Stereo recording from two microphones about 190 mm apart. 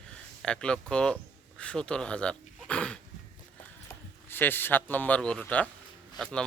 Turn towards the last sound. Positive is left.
turn(degrees=5)  # may be behind; listen again after turning